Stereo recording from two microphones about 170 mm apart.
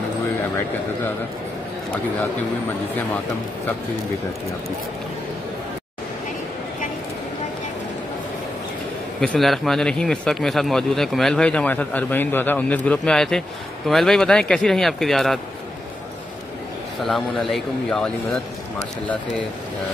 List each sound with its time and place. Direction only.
9.2 s a man's voice: 5° left (ahead or behind)
17.0 s a man's voice: centre (ahead or behind)